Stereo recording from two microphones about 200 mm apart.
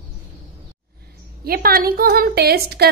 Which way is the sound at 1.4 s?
50° right (ahead or behind).